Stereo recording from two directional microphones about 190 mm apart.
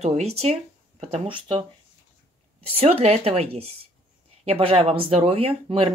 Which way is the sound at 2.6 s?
35° right (ahead or behind).